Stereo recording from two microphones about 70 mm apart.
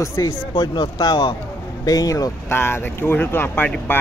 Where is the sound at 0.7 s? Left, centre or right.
Left.